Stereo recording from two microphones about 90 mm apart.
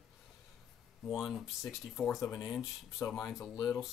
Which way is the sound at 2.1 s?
35° left (ahead or behind).